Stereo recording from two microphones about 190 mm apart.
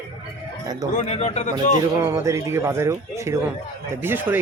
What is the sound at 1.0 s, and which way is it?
Speech, 35° left (ahead or behind).